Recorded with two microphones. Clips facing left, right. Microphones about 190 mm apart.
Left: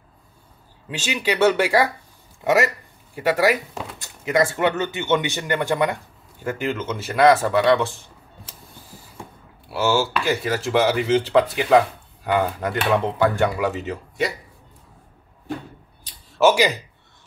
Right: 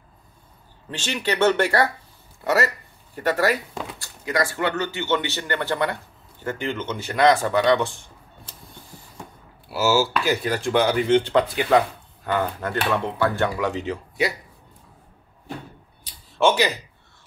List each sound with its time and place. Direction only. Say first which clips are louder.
0.8 s speech: left 2 dB; 10° left (ahead or behind)
4.0 s speech: left 5 dB; 20° left (ahead or behind); by 8.0 s centre (ahead or behind)
9.7 s speech: even; 5° right (ahead or behind)
12.3 s speech: left 3 dB; 15° left (ahead or behind)
16.3 s speech: left 3 dB; 10° left (ahead or behind)